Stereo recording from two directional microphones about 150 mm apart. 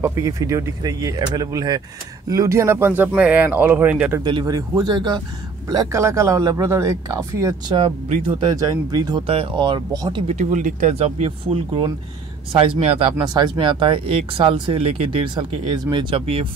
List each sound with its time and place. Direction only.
0.0 s speech: 20° right (ahead or behind)
4.2 s speech: 30° right (ahead or behind)
10.2 s speech: 50° right (ahead or behind)
11.0 s speech: 40° right (ahead or behind)